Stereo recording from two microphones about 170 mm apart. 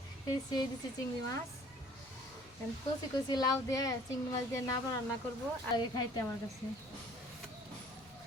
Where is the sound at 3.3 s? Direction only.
20° left (ahead or behind).